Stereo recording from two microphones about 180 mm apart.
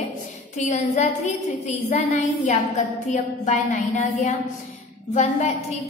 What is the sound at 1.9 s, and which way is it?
A woman's voice, 40° left (ahead or behind).